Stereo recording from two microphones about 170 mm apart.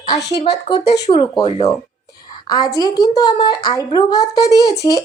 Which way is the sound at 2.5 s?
20° left (ahead or behind).